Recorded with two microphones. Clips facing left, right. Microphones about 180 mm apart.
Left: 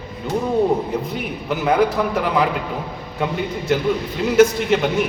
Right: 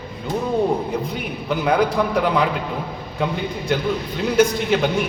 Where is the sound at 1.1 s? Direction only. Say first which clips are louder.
Even; centre (ahead or behind).